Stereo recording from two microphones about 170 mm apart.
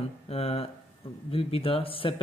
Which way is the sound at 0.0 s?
35° left (ahead or behind).